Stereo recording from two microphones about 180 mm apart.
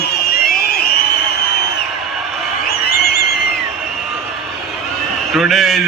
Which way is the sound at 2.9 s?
60° left (ahead or behind).